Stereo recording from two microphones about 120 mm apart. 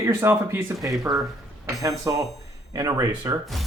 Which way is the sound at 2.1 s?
30° right (ahead or behind).